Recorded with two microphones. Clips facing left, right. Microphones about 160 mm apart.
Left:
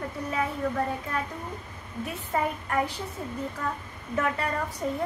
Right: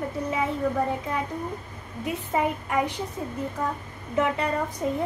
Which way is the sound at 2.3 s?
15° right (ahead or behind).